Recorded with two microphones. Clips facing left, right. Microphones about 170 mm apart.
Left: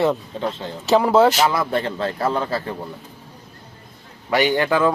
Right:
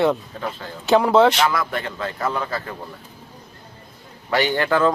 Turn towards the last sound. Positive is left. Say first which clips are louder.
# left 1 dB
turn(degrees=15)  # may be behind; listen again after turning